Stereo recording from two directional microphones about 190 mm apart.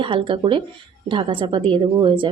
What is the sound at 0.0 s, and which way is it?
A woman's voice, 25° right (ahead or behind).